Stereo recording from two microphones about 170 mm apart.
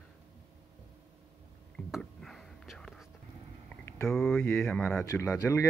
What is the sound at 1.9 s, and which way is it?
Whispering, centre (ahead or behind).